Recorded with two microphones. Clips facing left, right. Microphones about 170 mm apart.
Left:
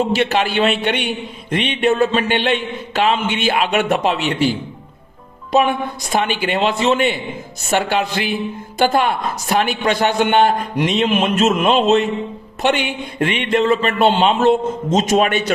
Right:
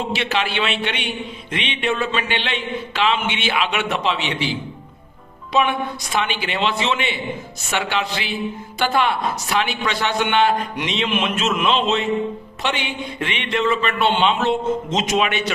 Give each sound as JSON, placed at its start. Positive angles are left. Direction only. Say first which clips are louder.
{"t": 0.0, "sound": "a man's voice", "louder": "left 6 dB", "side_deg": 45}